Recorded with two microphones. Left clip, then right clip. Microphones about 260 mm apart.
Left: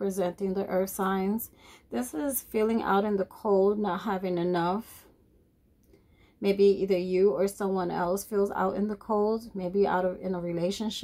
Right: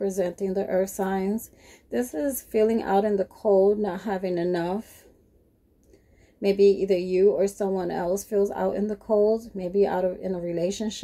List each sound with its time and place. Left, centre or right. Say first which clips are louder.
0.0 s speech: right 3 dB; centre
6.4 s speech: right 4 dB; centre